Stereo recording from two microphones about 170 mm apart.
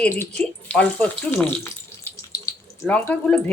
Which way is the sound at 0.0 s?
10° left (ahead or behind).